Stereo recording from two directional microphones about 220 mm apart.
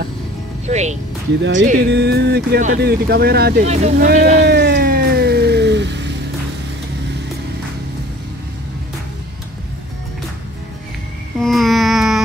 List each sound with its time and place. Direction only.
0.7 s speech: 30° right (ahead or behind)
1.4 s speech: 55° right (ahead or behind)
3.6 s speech: 30° right (ahead or behind)
4.0 s cat: 40° right (ahead or behind)
11.3 s a sound: centre (ahead or behind)